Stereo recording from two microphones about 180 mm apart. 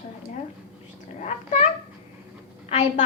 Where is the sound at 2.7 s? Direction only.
35° left (ahead or behind).